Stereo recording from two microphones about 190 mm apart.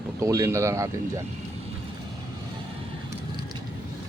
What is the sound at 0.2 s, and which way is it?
Speech, 15° right (ahead or behind).